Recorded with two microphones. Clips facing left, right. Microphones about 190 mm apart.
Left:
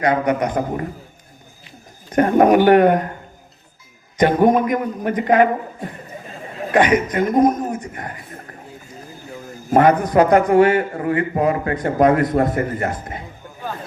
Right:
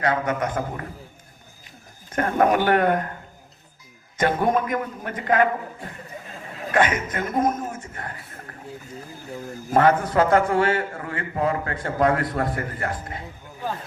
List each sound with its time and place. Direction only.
0.0 s a man's voice: 15° left (ahead or behind)
2.0 s a man's voice: 15° left (ahead or behind)
4.2 s a man's voice: 15° left (ahead or behind)
9.7 s a man's voice: 15° left (ahead or behind)